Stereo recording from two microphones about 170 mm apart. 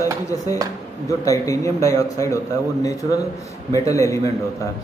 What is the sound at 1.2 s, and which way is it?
A man's voice, 20° left (ahead or behind).